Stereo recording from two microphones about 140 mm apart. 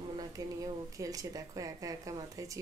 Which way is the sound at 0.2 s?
25° right (ahead or behind).